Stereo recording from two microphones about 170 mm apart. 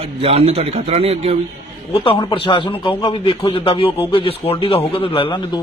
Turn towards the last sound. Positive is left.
turn(degrees=35)  # may be behind; listen again after turning